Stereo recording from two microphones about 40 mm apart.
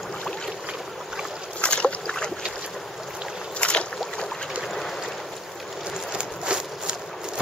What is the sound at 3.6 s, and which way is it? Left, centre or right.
Boat, left.